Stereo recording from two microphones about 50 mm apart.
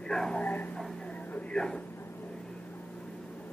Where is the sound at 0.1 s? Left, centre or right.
Centre.